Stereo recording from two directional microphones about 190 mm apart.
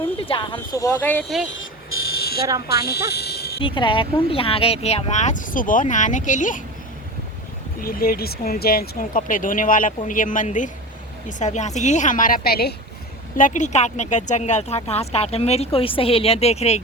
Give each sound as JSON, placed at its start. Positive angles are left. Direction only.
{"t": 0.3, "sound": "speech", "side_deg": 25}
{"t": 2.0, "sound": "fire alarm", "side_deg": 55}
{"t": 3.1, "sound": "a sound", "side_deg": 60}
{"t": 3.6, "sound": "speech", "side_deg": 25}
{"t": 7.8, "sound": "speech", "side_deg": 50}
{"t": 13.3, "sound": "speech", "side_deg": 45}